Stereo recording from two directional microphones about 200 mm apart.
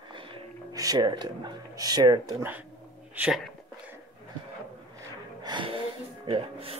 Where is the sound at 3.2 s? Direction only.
5° right (ahead or behind).